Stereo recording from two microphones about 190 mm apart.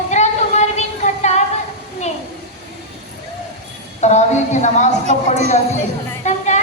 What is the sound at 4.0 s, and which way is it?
A woman's voice, 35° left (ahead or behind).